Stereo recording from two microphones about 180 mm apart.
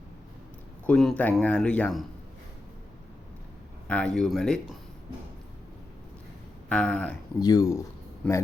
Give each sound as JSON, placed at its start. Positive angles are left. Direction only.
{"t": 0.9, "sound": "speech", "side_deg": 5}
{"t": 3.8, "sound": "speech", "side_deg": 5}
{"t": 6.7, "sound": "speech", "side_deg": 5}
{"t": 7.3, "sound": "speech", "side_deg": 20}
{"t": 8.2, "sound": "speech", "side_deg": 5}